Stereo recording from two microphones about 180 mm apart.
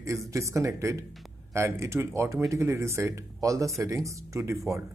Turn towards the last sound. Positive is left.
turn(degrees=-15)  # may be behind; listen again after turning